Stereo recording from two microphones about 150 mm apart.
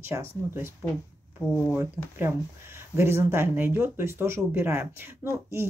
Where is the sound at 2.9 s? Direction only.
15° right (ahead or behind).